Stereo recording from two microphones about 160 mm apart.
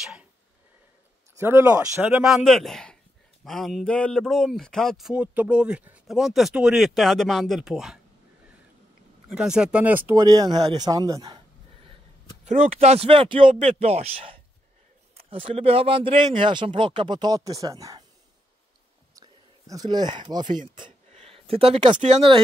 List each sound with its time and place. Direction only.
0.0 s a sound: 5° right (ahead or behind)
1.4 s speech: 15° right (ahead or behind)
2.2 s speech: centre (ahead or behind)
9.3 s speech: 5° right (ahead or behind); by 11.4 s 20° right (ahead or behind)
12.4 s speech: 45° right (ahead or behind)
13.5 s speech: 45° right (ahead or behind); by 18.0 s 20° right (ahead or behind)
19.7 s speech: 25° right (ahead or behind)
21.1 s a sound: 35° right (ahead or behind)
22.0 s speech: 40° right (ahead or behind)